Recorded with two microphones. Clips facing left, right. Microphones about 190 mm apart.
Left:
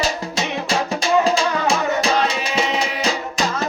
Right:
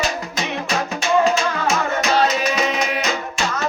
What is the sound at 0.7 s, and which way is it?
Music, 35° left (ahead or behind).